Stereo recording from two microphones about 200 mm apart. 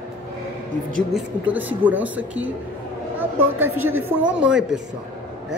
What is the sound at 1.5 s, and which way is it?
A woman's voice, 10° right (ahead or behind).